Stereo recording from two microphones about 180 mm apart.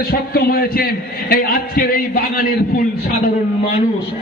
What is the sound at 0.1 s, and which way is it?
A man's voice, 60° left (ahead or behind).